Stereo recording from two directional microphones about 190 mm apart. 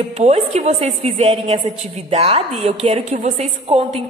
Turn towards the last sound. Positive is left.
turn(degrees=-30)  # may be behind; listen again after turning